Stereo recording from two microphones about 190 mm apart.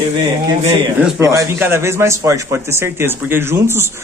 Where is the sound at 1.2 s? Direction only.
15° right (ahead or behind).